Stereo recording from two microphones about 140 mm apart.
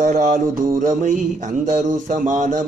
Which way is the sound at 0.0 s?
65° right (ahead or behind).